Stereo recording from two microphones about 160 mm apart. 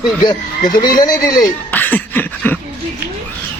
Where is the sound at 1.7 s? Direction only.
10° left (ahead or behind).